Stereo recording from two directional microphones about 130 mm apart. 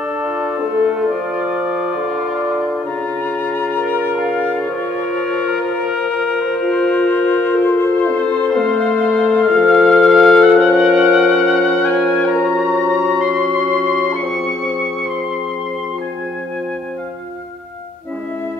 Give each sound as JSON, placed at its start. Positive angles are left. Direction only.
{"t": 0.4, "sound": "music", "side_deg": -10}
{"t": 3.5, "sound": "music", "side_deg": 15}
{"t": 4.2, "sound": "music", "side_deg": -5}
{"t": 9.7, "sound": "music", "side_deg": 0}